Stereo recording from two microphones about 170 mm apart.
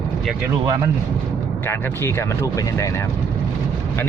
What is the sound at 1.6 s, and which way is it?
Speech, 15° left (ahead or behind).